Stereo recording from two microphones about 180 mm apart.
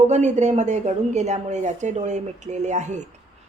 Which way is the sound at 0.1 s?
40° right (ahead or behind).